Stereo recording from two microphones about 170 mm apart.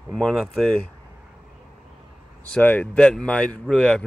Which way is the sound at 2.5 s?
10° left (ahead or behind).